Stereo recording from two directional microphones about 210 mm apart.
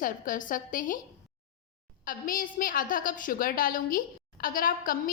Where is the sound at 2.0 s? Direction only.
40° left (ahead or behind).